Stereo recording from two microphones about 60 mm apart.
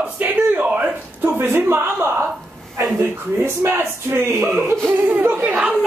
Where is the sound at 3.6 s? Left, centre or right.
Right.